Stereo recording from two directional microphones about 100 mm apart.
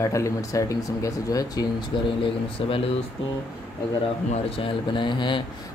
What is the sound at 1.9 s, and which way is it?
Speech, 50° left (ahead or behind).